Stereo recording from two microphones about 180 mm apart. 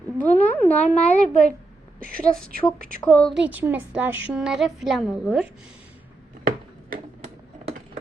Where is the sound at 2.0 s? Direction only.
50° right (ahead or behind).